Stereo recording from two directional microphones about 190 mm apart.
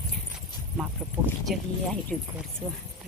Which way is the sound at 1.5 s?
5° left (ahead or behind).